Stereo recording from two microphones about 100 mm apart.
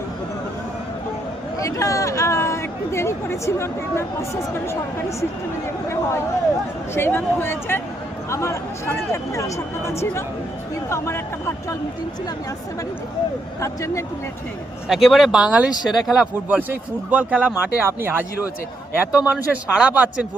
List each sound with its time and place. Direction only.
1.5 s speech: 30° left (ahead or behind)
6.9 s speech: 25° left (ahead or behind)
13.6 s speech: 30° left (ahead or behind)
14.8 s speech: centre (ahead or behind)